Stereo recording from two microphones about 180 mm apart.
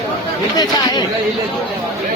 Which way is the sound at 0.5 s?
20° left (ahead or behind).